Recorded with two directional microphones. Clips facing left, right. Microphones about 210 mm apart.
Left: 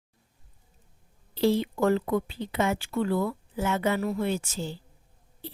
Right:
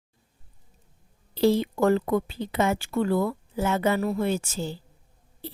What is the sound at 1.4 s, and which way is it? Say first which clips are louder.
A woman's voice: right 2 dB; 40° right (ahead or behind).